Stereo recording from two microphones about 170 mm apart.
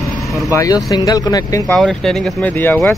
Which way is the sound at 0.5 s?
20° left (ahead or behind).